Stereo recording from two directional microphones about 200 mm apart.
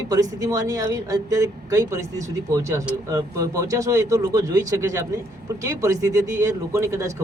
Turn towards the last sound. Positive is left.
turn(degrees=-15)  # may be behind; listen again after turning